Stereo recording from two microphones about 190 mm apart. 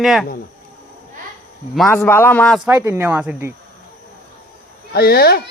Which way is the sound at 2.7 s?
15° right (ahead or behind).